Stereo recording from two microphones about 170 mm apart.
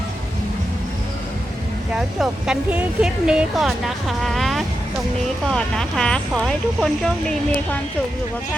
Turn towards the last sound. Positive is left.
turn(degrees=5)  # may be behind; listen again after turning